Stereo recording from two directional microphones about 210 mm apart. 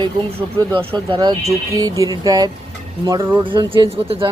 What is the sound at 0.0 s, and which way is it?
Speech, 25° right (ahead or behind).